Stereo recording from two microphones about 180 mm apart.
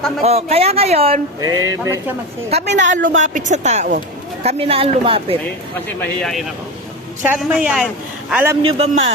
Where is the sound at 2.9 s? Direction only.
45° right (ahead or behind); by 5.4 s 30° right (ahead or behind).